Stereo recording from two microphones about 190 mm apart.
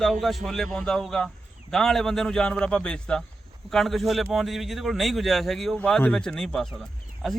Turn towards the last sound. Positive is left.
turn(degrees=0)  # may be behind; listen again after turning